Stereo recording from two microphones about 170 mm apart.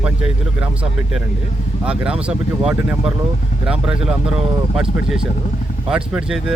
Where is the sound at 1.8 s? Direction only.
5° right (ahead or behind).